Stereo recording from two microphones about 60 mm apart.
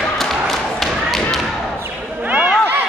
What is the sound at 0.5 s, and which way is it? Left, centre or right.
Thump, centre.